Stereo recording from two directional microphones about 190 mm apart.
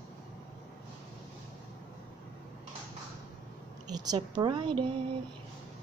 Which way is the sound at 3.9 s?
20° right (ahead or behind).